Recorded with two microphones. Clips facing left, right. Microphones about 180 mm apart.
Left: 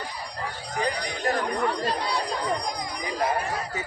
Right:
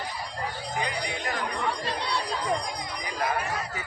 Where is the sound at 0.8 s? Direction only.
40° left (ahead or behind).